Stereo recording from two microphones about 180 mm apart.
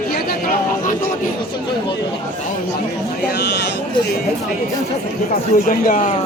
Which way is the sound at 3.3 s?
70° left (ahead or behind).